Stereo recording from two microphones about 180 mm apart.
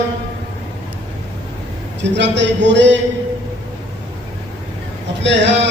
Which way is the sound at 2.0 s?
80° right.